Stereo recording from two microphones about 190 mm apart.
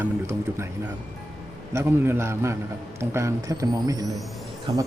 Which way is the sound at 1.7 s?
15° right (ahead or behind).